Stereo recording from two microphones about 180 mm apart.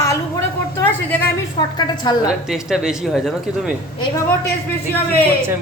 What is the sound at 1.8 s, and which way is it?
Speech, 25° left (ahead or behind).